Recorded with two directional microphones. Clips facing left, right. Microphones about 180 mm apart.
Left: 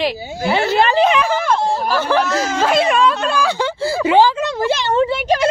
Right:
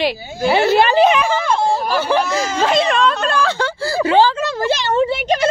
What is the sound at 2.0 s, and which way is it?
Speech, 5° right (ahead or behind).